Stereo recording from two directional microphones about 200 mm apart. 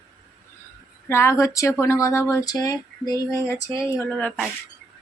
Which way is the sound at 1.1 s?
15° left (ahead or behind).